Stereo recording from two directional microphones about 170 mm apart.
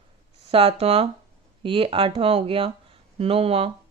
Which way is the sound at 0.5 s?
35° right (ahead or behind).